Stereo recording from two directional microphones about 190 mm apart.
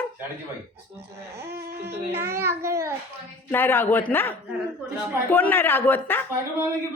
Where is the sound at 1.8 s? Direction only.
10° right (ahead or behind).